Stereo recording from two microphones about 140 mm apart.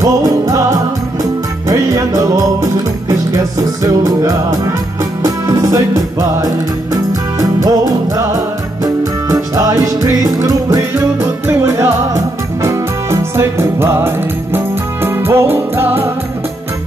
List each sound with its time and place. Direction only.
0.0 s music: 25° right (ahead or behind)